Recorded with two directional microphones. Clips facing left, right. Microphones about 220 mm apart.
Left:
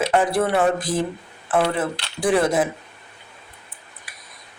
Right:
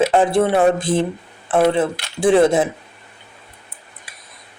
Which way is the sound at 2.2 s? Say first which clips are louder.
Right 5 dB; 25° right (ahead or behind).